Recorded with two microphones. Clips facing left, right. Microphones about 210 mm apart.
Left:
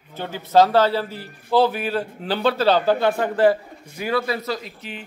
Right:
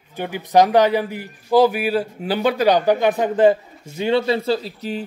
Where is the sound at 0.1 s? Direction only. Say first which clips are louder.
Right 1 dB; 15° right (ahead or behind).